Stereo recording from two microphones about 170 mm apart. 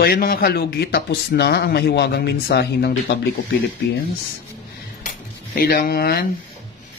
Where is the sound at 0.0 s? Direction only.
60° left (ahead or behind).